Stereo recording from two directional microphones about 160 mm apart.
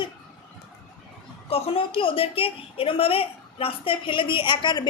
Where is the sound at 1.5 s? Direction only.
40° left (ahead or behind).